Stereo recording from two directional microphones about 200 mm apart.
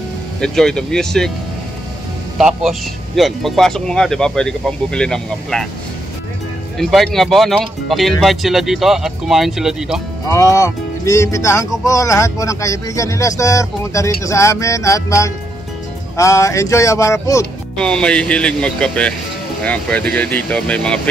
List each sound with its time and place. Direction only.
0.4 s speech: 5° left (ahead or behind)
2.3 s speech: centre (ahead or behind)
6.8 s speech: centre (ahead or behind)
10.2 s speech: 15° left (ahead or behind)
17.7 s speech: 5° left (ahead or behind)